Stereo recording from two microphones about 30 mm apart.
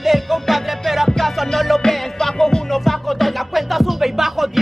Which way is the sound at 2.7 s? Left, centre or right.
Centre.